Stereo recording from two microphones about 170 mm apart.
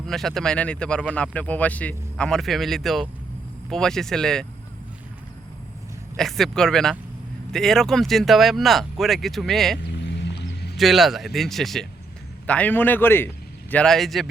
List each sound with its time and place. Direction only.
0.1 s speech: centre (ahead or behind)
6.1 s speech: centre (ahead or behind)
10.0 s music: 90° left
10.8 s speech: centre (ahead or behind)